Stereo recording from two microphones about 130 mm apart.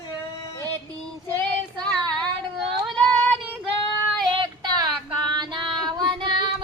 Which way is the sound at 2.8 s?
5° left (ahead or behind).